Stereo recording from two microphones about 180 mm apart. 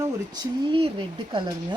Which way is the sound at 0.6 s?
30° right (ahead or behind).